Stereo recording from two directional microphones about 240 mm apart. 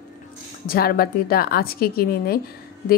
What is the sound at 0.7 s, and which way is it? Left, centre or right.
A woman's voice, left.